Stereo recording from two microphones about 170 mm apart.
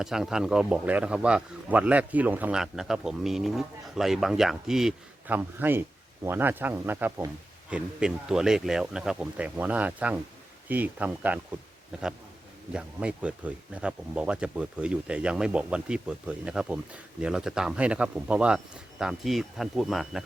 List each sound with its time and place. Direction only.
0.0 s a man's voice: 5° right (ahead or behind)